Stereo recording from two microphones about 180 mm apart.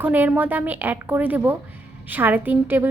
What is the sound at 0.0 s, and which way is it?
A woman's voice, 10° right (ahead or behind).